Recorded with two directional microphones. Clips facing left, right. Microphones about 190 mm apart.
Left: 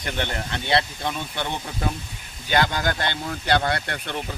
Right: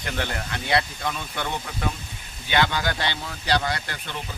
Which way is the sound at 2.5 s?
45° left (ahead or behind).